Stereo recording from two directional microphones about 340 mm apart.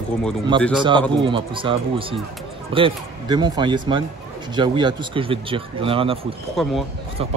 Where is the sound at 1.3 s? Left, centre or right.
Centre.